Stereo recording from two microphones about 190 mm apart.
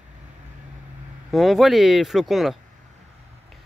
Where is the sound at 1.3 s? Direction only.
Centre (ahead or behind).